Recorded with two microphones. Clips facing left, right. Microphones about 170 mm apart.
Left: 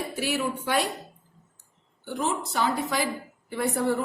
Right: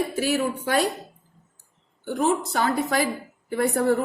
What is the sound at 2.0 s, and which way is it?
A woman's voice, 45° right (ahead or behind).